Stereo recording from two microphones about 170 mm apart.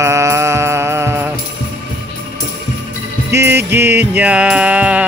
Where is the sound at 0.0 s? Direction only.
15° right (ahead or behind).